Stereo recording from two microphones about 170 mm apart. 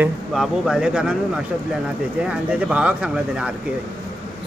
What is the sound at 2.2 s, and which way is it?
Speech, 5° right (ahead or behind).